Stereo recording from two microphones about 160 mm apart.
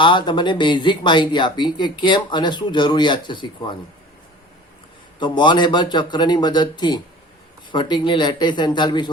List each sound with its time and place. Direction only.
0.0 s speech: 30° left (ahead or behind)
5.2 s speech: 30° left (ahead or behind)